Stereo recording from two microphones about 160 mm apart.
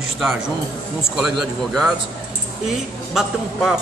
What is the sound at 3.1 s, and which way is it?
Speech, centre (ahead or behind).